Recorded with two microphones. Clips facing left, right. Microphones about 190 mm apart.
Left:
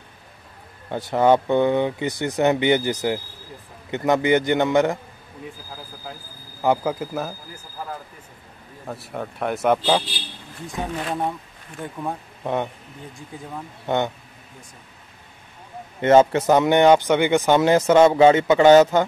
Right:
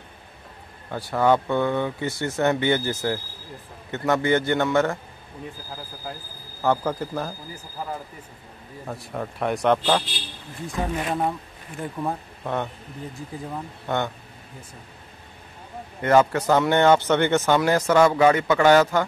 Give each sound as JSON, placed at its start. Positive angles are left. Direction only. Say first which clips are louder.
{"t": 0.9, "sound": "speech", "louder": "left 3 dB", "side_deg": 20}
{"t": 6.1, "sound": "speech", "louder": "right 2 dB", "side_deg": 0}
{"t": 6.6, "sound": "speech", "louder": "left 2 dB", "side_deg": 10}
{"t": 8.8, "sound": "speech", "louder": "left 1 dB", "side_deg": 0}
{"t": 12.4, "sound": "speech", "louder": "left 3 dB", "side_deg": 20}
{"t": 13.8, "sound": "speech", "louder": "left 4 dB", "side_deg": 20}
{"t": 16.0, "sound": "speech", "louder": "left 4 dB", "side_deg": 25}